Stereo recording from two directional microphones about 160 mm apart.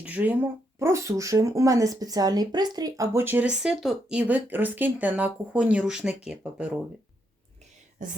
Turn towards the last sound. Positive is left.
turn(degrees=-5)  # may be behind; listen again after turning